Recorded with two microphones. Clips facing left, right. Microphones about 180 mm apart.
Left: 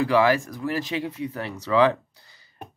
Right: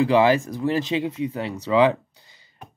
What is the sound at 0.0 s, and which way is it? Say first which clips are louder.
Speech: right 3 dB; 20° right (ahead or behind).